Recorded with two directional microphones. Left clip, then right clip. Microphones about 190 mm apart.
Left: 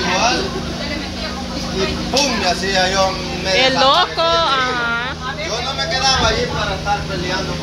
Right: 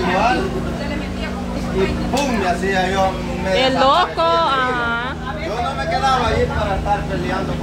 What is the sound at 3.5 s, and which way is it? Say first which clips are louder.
Speech: left 1 dB; 5° right (ahead or behind).